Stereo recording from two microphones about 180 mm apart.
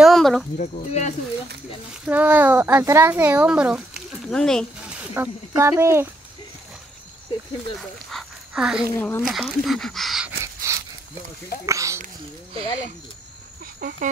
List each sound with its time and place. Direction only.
0.0 s a sound: centre (ahead or behind)
0.6 s speech: 40° left (ahead or behind)
2.0 s speech: 10° right (ahead or behind)
5.1 s speech: 10° right (ahead or behind)
8.1 s dog: centre (ahead or behind)
8.9 s speech: 10° left (ahead or behind)
9.2 s speech: centre (ahead or behind)
10.4 s dog: 15° right (ahead or behind)
11.6 s a sound: 15° right (ahead or behind)
13.7 s cricket: 55° right (ahead or behind)